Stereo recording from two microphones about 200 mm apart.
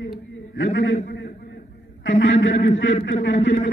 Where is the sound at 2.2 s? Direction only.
70° left (ahead or behind).